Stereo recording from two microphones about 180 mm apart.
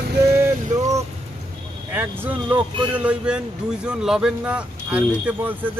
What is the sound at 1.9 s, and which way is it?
Speech, 10° right (ahead or behind).